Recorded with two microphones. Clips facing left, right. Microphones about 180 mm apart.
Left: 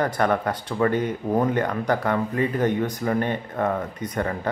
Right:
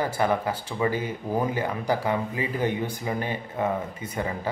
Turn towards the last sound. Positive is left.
turn(degrees=-10)  # may be behind; listen again after turning